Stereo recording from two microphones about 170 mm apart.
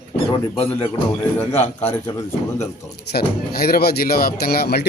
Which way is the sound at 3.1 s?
65° left (ahead or behind).